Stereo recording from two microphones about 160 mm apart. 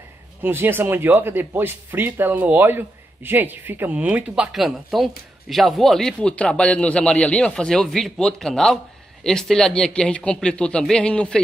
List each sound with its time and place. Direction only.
0.4 s a man's voice: 10° right (ahead or behind); by 11.4 s 5° left (ahead or behind)